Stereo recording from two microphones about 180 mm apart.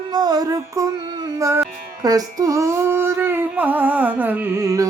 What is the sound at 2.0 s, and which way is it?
Female singing, 20° right (ahead or behind).